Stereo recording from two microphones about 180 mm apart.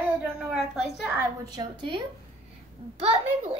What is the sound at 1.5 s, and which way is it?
Speech, 25° right (ahead or behind).